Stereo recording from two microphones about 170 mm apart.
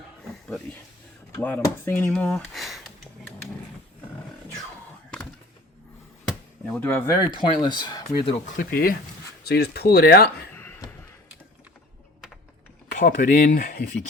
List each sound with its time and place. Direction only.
1.4 s speech: 10° left (ahead or behind)
6.7 s speech: 10° left (ahead or behind)
7.3 s speech: 25° left (ahead or behind)
8.5 s speech: 60° left (ahead or behind)
10.5 s a sound: 10° left (ahead or behind)
12.9 s speech: 50° left (ahead or behind)